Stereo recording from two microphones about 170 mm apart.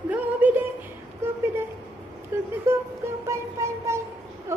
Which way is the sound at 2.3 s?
15° right (ahead or behind).